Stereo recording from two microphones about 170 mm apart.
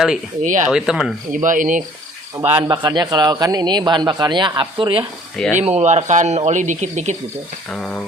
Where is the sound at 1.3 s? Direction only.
50° right (ahead or behind).